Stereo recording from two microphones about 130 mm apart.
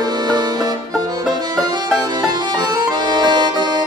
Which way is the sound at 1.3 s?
30° right (ahead or behind).